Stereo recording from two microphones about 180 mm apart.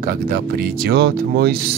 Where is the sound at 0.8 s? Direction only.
60° right (ahead or behind).